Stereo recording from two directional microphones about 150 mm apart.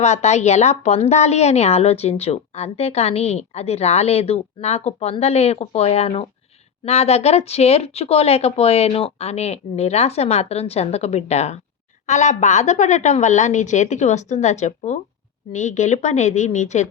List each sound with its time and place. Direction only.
0.0 s a woman's voice: 50° left (ahead or behind)